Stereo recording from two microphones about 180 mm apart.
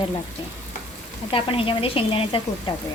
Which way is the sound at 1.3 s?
30° left (ahead or behind).